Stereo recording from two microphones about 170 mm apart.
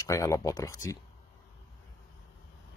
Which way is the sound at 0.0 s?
20° left (ahead or behind).